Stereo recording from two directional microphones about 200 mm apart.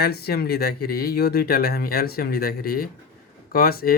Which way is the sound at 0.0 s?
50° left (ahead or behind).